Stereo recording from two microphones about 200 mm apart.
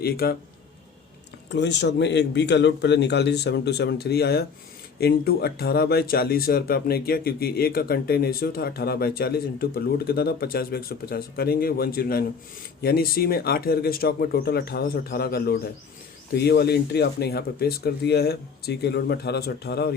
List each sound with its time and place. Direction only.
0.0 s speech: 50° left (ahead or behind)
1.5 s a man's voice: 60° left (ahead or behind)